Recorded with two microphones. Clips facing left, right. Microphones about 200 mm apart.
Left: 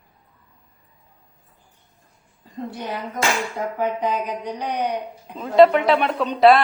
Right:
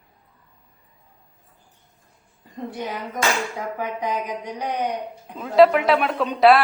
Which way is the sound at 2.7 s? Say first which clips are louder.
Right 1 dB; 15° right (ahead or behind).